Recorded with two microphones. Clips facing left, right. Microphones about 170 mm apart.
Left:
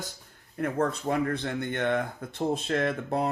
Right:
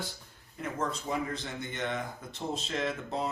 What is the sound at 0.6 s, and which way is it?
Speech, 60° left (ahead or behind).